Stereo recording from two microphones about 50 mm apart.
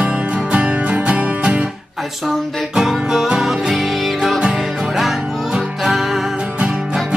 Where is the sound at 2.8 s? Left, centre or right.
Centre.